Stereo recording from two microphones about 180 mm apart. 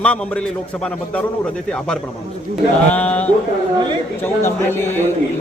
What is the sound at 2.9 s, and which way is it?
Speech, 10° left (ahead or behind).